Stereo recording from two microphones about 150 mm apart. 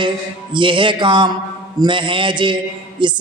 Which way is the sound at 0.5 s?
35° right (ahead or behind).